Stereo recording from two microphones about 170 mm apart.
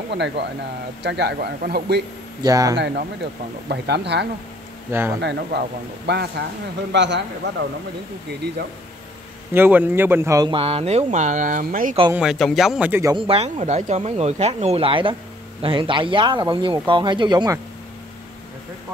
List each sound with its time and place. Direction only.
0.1 s speech: 80° right
2.4 s speech: 20° right (ahead or behind)
2.7 s speech: 85° right
4.9 s speech: 15° right (ahead or behind)
5.2 s speech: 85° right
9.5 s speech: 10° right (ahead or behind)
10.5 s speech: 35° right (ahead or behind); by 12.0 s 50° right (ahead or behind)
12.1 s a man's voice: 5° right (ahead or behind)
13.3 s speech: 40° right (ahead or behind)